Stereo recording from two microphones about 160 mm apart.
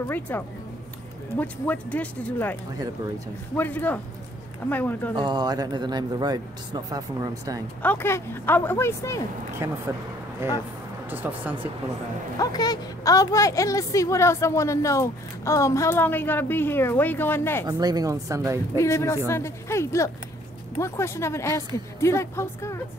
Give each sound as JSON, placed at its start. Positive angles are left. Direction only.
{"t": 0.3, "sound": "a woman's voice", "side_deg": 10}
{"t": 3.5, "sound": "a woman's voice", "side_deg": 10}
{"t": 5.1, "sound": "speech", "side_deg": -30}
{"t": 7.8, "sound": "a woman's voice", "side_deg": 10}
{"t": 9.6, "sound": "speech", "side_deg": -15}
{"t": 11.1, "sound": "speech", "side_deg": -10}
{"t": 12.4, "sound": "a woman's voice", "side_deg": 25}
{"t": 17.6, "sound": "speech", "side_deg": -25}
{"t": 18.8, "sound": "a woman's voice", "side_deg": 20}